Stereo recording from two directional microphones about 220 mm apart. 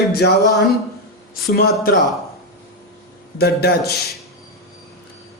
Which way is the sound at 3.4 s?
45° left (ahead or behind).